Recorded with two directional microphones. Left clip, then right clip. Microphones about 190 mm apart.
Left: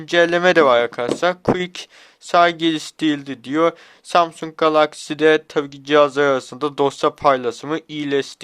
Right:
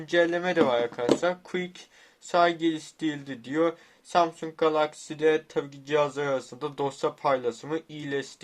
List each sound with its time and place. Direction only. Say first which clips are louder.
0.0 s speech: left 9 dB; 40° left (ahead or behind)